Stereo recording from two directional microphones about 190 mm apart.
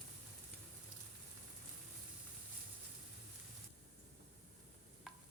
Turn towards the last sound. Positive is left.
turn(degrees=0)  # may be behind; listen again after turning